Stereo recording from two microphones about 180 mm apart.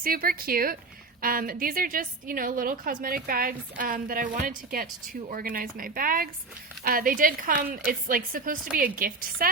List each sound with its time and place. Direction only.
0.0 s a woman's voice: 55° right (ahead or behind)